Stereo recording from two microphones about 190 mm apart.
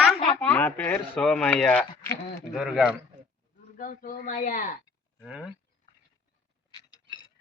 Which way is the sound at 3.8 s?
45° left (ahead or behind).